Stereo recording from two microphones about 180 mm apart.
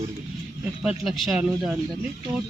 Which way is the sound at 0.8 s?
Centre (ahead or behind).